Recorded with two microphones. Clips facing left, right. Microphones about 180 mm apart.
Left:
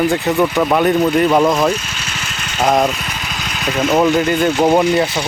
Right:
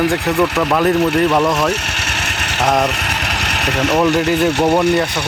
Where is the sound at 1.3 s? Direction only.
20° left (ahead or behind).